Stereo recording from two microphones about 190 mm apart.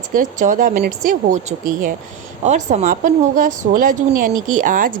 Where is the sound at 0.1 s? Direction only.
45° right (ahead or behind).